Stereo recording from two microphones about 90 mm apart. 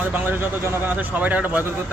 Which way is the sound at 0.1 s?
20° right (ahead or behind).